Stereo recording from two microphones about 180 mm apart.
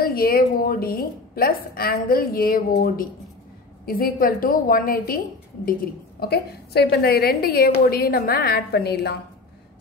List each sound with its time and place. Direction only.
0.0 s a woman's voice: 55° left (ahead or behind)